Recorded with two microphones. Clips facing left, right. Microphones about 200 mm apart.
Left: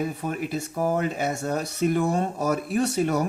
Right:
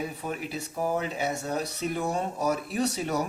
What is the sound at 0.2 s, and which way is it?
Speech, 50° left (ahead or behind).